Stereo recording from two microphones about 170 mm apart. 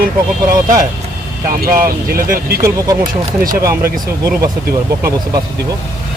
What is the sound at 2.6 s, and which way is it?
Speech, 20° right (ahead or behind).